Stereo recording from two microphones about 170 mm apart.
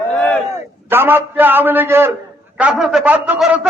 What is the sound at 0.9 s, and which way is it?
A man's voice, 10° right (ahead or behind).